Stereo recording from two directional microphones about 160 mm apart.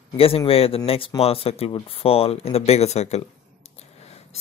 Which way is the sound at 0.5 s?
35° left (ahead or behind).